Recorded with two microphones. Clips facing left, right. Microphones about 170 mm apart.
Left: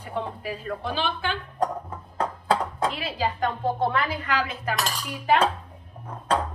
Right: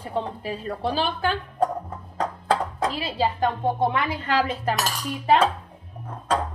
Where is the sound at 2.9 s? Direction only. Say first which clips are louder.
Right 3 dB; 30° right (ahead or behind).